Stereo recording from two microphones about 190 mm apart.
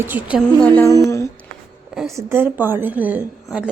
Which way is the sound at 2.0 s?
15° right (ahead or behind).